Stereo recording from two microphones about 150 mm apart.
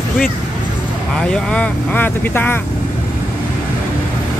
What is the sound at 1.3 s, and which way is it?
Speech, 5° left (ahead or behind).